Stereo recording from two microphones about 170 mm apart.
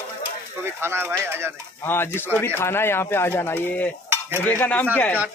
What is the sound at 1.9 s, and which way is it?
Speech, 10° left (ahead or behind).